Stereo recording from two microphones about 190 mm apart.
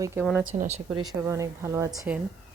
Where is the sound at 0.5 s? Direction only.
35° right (ahead or behind).